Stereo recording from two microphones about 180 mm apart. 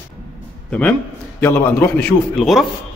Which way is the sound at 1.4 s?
10° left (ahead or behind).